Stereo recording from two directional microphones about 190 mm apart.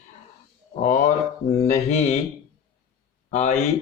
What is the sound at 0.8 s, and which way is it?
Speech, 40° left (ahead or behind).